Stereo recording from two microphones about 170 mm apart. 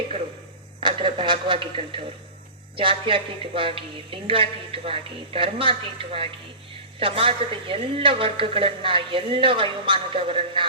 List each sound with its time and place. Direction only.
0.8 s a man's voice: 30° right (ahead or behind)